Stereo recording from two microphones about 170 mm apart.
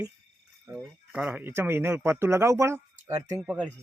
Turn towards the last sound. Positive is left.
turn(degrees=-5)  # may be behind; listen again after turning